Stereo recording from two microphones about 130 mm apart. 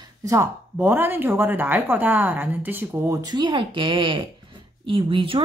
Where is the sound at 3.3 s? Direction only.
35° right (ahead or behind).